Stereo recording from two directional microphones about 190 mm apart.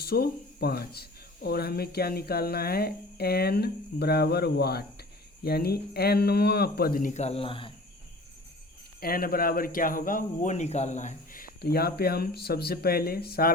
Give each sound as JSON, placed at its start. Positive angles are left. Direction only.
{"t": 0.0, "sound": "speech", "side_deg": 55}
{"t": 9.0, "sound": "speech", "side_deg": 50}